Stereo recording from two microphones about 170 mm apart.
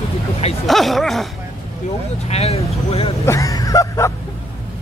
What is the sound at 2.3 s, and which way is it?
Speech, 40° left (ahead or behind).